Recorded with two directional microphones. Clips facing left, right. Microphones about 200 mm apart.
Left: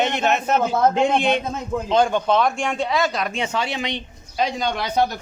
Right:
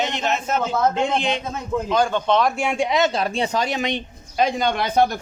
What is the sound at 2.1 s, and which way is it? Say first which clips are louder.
Speech: even; 5° left (ahead or behind).